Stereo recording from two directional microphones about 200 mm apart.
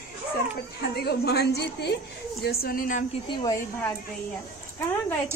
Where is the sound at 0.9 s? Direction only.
55° left (ahead or behind).